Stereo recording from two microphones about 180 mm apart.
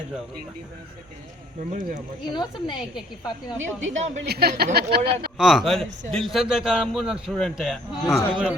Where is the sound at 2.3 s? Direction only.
25° left (ahead or behind).